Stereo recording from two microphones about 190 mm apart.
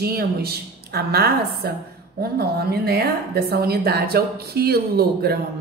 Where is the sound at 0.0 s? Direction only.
55° right (ahead or behind).